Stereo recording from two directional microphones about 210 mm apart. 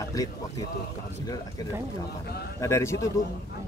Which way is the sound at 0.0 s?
15° left (ahead or behind).